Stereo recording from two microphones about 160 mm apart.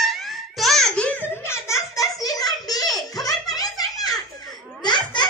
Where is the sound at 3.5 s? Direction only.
25° left (ahead or behind).